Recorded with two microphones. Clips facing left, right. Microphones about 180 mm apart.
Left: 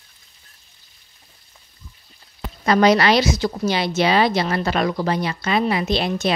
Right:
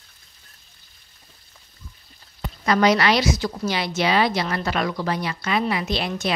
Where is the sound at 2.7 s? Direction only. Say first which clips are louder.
Left 3 dB; 30° left (ahead or behind).